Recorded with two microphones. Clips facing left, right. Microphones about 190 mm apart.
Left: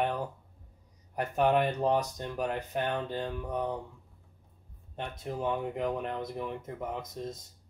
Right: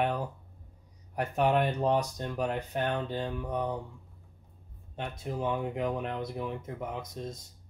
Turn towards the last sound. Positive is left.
turn(degrees=0)  # may be behind; listen again after turning